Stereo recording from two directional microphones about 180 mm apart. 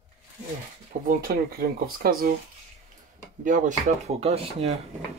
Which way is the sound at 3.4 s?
45° right (ahead or behind).